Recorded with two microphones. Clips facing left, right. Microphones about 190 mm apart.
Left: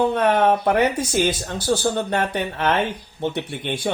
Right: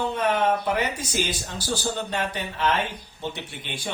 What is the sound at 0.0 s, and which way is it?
Speech, 60° left (ahead or behind).